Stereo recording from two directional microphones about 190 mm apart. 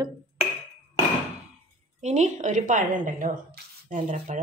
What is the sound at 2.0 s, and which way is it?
Speech, 35° right (ahead or behind).